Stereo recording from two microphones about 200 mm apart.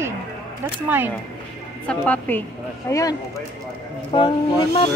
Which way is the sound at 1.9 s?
5° left (ahead or behind).